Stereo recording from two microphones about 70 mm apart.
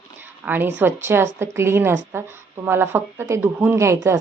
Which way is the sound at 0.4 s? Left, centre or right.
Right.